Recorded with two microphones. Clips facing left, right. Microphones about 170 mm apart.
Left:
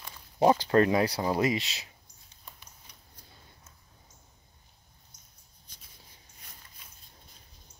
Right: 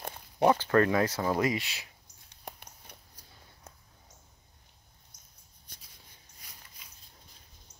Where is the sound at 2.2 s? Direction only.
65° right (ahead or behind).